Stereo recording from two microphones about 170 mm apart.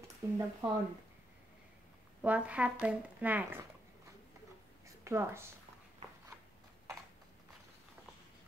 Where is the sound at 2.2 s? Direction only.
10° right (ahead or behind).